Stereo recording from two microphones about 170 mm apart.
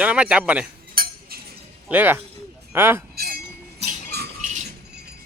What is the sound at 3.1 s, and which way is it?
Chink, 65° right (ahead or behind).